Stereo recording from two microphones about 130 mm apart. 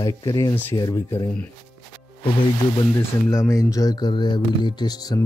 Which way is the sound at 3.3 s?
25° left (ahead or behind).